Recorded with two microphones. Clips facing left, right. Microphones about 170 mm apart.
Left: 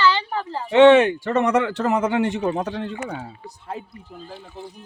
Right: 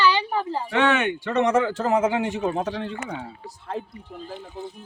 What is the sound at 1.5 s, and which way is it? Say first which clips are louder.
Speech: left 1 dB; 70° left (ahead or behind).